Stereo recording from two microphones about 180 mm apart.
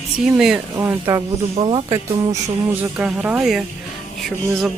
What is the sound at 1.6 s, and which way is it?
Speech, 25° right (ahead or behind).